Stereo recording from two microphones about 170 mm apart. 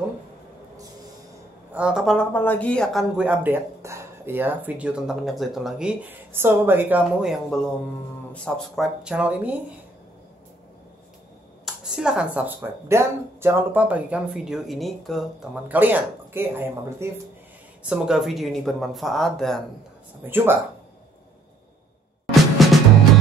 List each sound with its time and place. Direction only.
1.7 s speech: 5° right (ahead or behind)
11.6 s speech: 5° right (ahead or behind)
15.7 s speech: 10° right (ahead or behind)
20.2 s speech: 15° right (ahead or behind)
22.3 s music: centre (ahead or behind)